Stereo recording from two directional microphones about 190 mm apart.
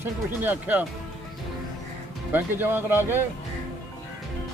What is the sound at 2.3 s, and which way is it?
Speech, 10° right (ahead or behind).